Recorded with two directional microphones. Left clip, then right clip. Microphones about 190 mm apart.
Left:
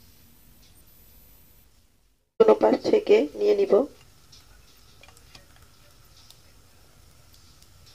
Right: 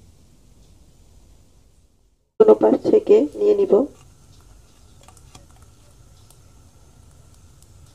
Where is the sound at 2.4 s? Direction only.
10° left (ahead or behind).